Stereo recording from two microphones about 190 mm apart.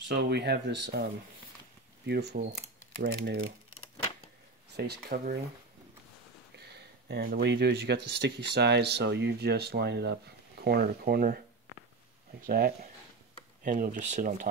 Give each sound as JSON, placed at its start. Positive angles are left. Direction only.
{"t": 0.1, "sound": "speech", "side_deg": -65}
{"t": 2.0, "sound": "speech", "side_deg": -60}
{"t": 4.7, "sound": "speech", "side_deg": -60}
{"t": 6.5, "sound": "speech", "side_deg": -60}
{"t": 12.4, "sound": "speech", "side_deg": -55}